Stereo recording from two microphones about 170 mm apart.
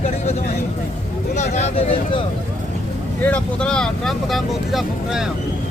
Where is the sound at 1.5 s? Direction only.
35° left (ahead or behind).